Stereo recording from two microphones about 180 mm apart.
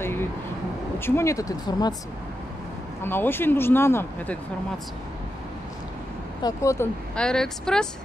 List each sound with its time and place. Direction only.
0.0 s vehicle: 15° left (ahead or behind)
0.9 s speech: 15° left (ahead or behind)
3.0 s speech: 10° left (ahead or behind)
6.4 s speech: 15° left (ahead or behind)
7.2 s speech: 5° left (ahead or behind)